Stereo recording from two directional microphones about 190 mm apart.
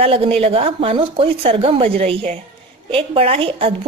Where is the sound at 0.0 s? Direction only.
30° right (ahead or behind).